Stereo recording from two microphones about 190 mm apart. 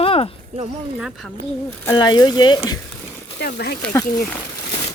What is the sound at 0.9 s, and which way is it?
Speech, 5° right (ahead or behind).